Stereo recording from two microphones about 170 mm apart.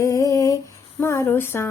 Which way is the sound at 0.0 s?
20° left (ahead or behind).